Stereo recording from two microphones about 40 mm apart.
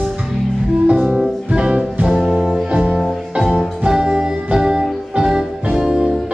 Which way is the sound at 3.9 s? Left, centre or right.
Centre.